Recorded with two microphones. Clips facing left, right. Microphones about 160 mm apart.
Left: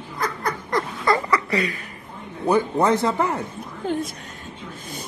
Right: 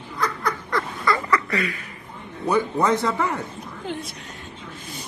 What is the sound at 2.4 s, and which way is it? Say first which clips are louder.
A man's voice: left 2 dB; 30° left (ahead or behind).